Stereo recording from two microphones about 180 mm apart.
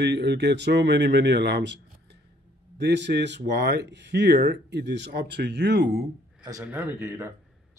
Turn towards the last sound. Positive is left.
turn(degrees=-15)  # may be behind; listen again after turning